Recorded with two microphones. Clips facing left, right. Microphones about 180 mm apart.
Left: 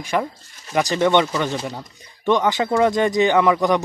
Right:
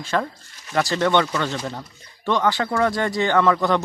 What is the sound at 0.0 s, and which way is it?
A man's voice, 15° left (ahead or behind).